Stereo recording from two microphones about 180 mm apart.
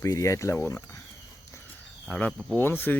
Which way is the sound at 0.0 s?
15° left (ahead or behind).